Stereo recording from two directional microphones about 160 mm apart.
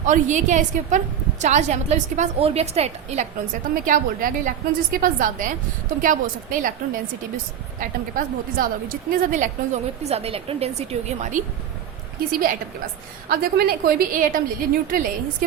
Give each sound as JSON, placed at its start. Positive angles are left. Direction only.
{"t": 0.0, "sound": "a woman's voice", "side_deg": -50}